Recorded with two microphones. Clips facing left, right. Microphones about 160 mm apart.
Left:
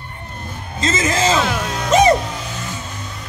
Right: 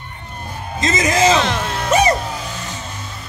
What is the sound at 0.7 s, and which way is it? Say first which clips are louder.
Music: right 2 dB; 15° right (ahead or behind).